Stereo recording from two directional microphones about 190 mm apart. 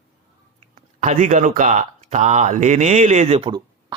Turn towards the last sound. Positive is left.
turn(degrees=-30)  # may be behind; listen again after turning